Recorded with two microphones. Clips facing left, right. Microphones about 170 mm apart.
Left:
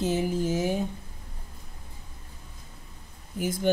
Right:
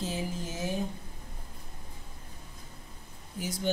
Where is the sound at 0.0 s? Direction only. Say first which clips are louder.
Left 9 dB; 70° left (ahead or behind).